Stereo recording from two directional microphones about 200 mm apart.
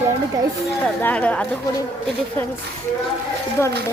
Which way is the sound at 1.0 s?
5° left (ahead or behind).